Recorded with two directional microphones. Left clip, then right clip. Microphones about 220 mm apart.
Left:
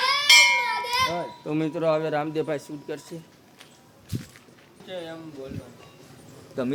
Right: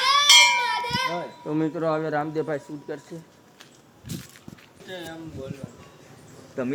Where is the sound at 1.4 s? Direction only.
Centre (ahead or behind).